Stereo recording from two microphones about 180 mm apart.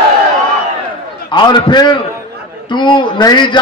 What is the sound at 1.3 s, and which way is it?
A man's voice, 25° left (ahead or behind).